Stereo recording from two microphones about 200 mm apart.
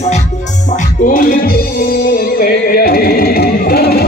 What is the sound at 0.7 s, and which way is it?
Music, 45° left (ahead or behind).